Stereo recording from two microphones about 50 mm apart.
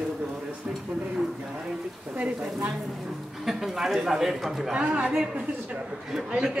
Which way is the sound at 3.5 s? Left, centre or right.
Centre.